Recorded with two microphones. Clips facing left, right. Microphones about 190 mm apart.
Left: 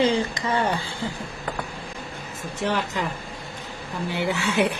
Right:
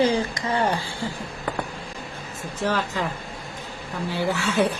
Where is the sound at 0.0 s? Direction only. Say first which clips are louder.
Even; 25° left (ahead or behind).